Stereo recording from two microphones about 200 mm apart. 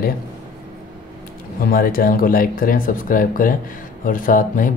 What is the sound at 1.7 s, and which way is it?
Speech, 45° left (ahead or behind).